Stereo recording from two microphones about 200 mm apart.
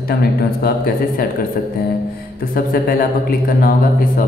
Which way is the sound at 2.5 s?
45° left (ahead or behind).